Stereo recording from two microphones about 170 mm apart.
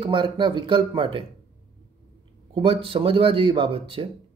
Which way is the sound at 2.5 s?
35° right (ahead or behind).